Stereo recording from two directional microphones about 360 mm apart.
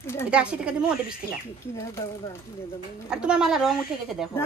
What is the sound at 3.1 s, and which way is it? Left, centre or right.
Speech, centre.